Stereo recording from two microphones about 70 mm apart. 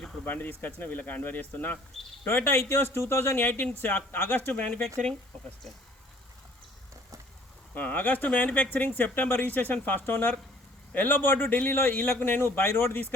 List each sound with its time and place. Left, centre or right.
0.3 s speech: left
2.2 s a man's voice: left
7.7 s a man's voice: left